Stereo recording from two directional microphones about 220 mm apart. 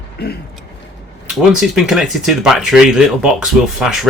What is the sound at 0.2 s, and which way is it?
Speech, 50° left (ahead or behind).